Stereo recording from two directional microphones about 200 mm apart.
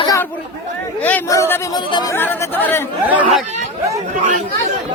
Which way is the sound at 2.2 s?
10° left (ahead or behind).